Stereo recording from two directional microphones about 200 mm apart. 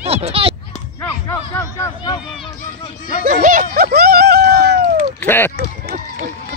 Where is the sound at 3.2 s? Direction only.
45° right (ahead or behind).